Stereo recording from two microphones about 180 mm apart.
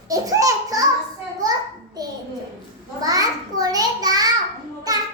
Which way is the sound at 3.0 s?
20° right (ahead or behind).